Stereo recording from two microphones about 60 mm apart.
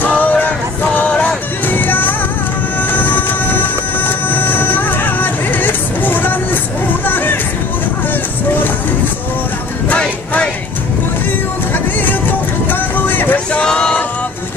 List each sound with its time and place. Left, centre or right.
0.0 s music: left
2.8 s train: left
4.3 s music: left
9.8 s music: centre
11.7 s vehicle: left
13.6 s a sound: centre